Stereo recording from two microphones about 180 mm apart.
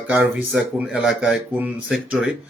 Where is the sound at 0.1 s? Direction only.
5° right (ahead or behind).